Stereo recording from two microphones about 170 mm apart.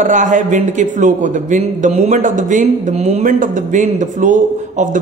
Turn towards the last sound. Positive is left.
turn(degrees=-45)  # may be behind; listen again after turning